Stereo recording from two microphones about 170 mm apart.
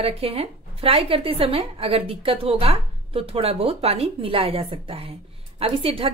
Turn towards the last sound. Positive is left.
turn(degrees=-35)  # may be behind; listen again after turning